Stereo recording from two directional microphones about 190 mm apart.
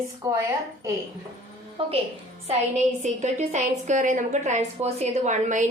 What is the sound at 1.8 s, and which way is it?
A woman's voice, 30° right (ahead or behind).